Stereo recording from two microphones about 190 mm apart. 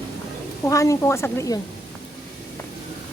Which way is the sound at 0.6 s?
15° left (ahead or behind).